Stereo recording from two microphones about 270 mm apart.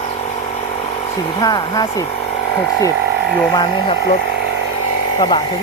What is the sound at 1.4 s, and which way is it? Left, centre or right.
Speech, centre.